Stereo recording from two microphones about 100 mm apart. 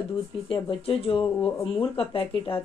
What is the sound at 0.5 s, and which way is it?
Speech, 65° left (ahead or behind).